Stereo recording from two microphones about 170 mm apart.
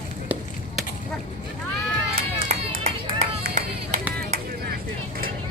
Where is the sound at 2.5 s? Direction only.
40° right (ahead or behind).